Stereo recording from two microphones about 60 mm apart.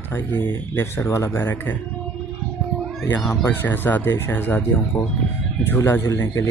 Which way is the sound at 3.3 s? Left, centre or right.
Left.